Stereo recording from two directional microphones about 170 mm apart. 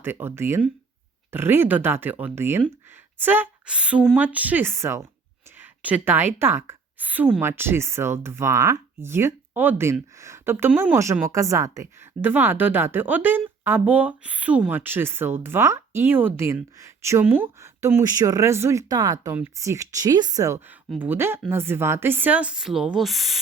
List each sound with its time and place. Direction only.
0.0 s a woman's voice: 15° right (ahead or behind)